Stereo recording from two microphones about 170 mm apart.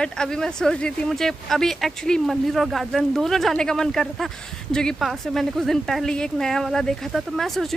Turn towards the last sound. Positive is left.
turn(degrees=0)  # may be behind; listen again after turning